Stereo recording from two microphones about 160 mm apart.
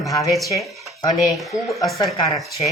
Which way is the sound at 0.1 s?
20° left (ahead or behind).